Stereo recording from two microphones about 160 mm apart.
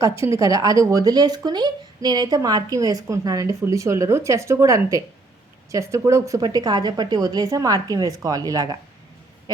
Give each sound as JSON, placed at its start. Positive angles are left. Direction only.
{"t": 0.0, "sound": "speech", "side_deg": -20}